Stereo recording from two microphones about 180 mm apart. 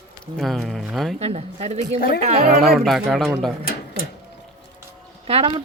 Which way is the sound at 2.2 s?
40° right (ahead or behind).